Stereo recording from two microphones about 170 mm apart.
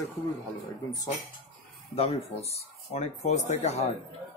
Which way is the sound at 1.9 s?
35° left (ahead or behind).